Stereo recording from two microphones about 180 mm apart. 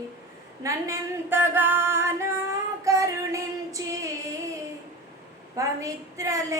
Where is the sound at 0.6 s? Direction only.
15° right (ahead or behind).